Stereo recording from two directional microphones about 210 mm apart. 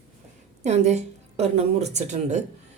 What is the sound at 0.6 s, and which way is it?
A woman's voice, 30° right (ahead or behind).